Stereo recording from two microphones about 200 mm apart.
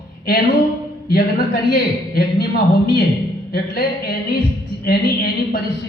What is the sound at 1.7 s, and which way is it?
A woman's voice, 50° left (ahead or behind).